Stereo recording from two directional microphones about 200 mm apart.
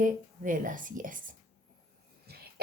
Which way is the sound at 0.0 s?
40° right (ahead or behind).